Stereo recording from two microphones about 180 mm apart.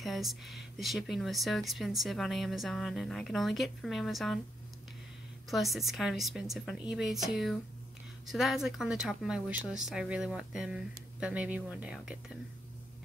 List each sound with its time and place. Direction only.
0.0 s speech: centre (ahead or behind)
5.5 s speech: centre (ahead or behind)